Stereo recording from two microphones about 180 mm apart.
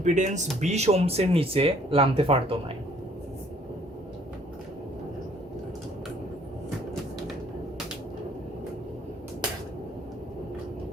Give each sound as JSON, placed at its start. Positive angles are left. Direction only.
{"t": 0.0, "sound": "speech", "side_deg": -40}